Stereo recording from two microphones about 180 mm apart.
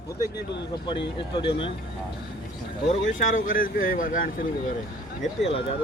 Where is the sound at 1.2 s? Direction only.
30° left (ahead or behind).